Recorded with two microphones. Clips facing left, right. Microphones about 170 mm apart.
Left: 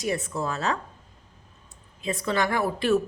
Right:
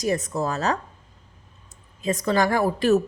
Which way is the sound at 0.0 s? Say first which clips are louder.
Right 4 dB; 40° right (ahead or behind).